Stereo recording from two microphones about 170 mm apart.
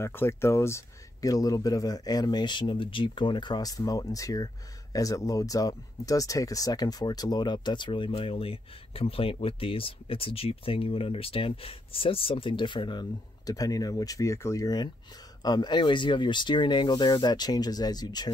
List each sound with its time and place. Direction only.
0.0 s speech: 15° left (ahead or behind)